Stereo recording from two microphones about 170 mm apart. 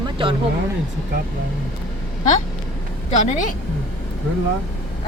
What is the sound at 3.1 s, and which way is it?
Speech, 45° left (ahead or behind).